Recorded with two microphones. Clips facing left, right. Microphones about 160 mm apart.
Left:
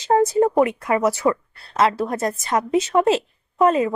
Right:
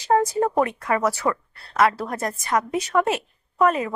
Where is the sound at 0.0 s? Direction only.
20° left (ahead or behind).